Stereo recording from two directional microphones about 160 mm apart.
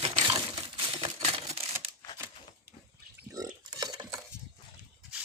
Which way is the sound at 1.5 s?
35° right (ahead or behind).